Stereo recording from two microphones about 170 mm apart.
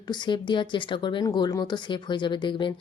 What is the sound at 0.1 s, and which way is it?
Speech, 25° left (ahead or behind).